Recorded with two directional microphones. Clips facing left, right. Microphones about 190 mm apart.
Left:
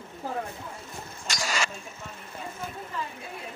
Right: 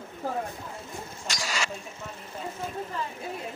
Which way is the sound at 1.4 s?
50° left (ahead or behind).